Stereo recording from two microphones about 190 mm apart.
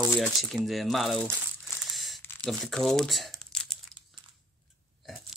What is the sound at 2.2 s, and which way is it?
Crumpling, 10° left (ahead or behind).